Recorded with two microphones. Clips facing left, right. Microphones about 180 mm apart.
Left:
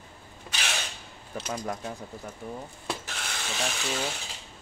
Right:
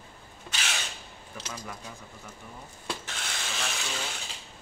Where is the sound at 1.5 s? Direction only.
40° left (ahead or behind).